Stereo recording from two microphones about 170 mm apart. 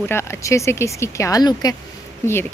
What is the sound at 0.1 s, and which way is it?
A woman's voice, 15° left (ahead or behind).